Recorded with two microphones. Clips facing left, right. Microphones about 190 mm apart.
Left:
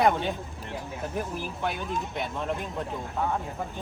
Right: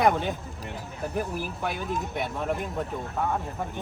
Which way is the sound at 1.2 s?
5° right (ahead or behind).